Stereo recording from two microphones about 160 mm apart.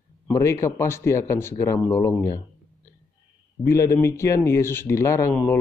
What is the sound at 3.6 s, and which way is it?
Speech, 20° left (ahead or behind).